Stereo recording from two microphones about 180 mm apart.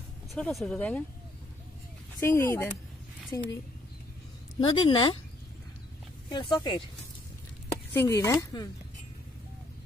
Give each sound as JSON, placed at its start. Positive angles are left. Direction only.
{"t": 0.3, "sound": "speech", "side_deg": 0}
{"t": 2.1, "sound": "speech", "side_deg": 15}
{"t": 4.6, "sound": "speech", "side_deg": 25}
{"t": 6.3, "sound": "speech", "side_deg": 25}
{"t": 7.9, "sound": "speech", "side_deg": 15}